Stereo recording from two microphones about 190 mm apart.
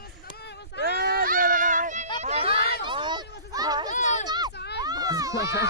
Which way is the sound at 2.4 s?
55° left (ahead or behind).